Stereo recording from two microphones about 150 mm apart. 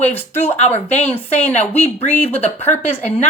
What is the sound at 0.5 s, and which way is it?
Speech, 45° left (ahead or behind).